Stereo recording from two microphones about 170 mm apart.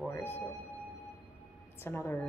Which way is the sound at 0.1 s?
15° left (ahead or behind).